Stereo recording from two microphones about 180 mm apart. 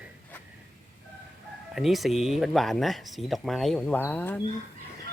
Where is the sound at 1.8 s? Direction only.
Centre (ahead or behind).